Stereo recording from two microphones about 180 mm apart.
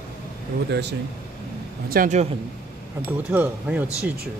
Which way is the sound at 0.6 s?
70° right (ahead or behind).